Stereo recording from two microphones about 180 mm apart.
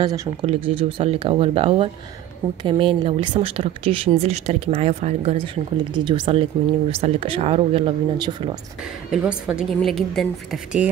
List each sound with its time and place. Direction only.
0.0 s speech: 20° right (ahead or behind)
0.5 s speech: 30° right (ahead or behind)
9.1 s a woman's voice: 5° right (ahead or behind)